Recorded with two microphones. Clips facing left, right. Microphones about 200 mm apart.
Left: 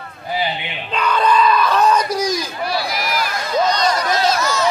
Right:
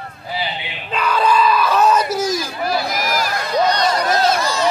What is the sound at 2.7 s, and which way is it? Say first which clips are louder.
Run: right 3 dB; 45° right (ahead or behind).